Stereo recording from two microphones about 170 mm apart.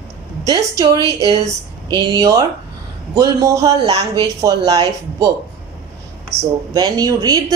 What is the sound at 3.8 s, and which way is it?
Speech, 30° right (ahead or behind).